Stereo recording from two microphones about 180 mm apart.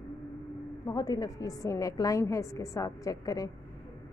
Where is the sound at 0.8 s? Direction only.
20° left (ahead or behind).